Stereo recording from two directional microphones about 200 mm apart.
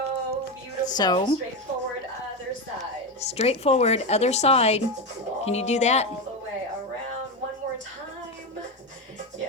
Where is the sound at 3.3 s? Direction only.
30° left (ahead or behind).